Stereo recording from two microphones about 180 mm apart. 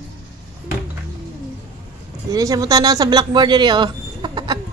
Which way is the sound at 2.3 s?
20° right (ahead or behind).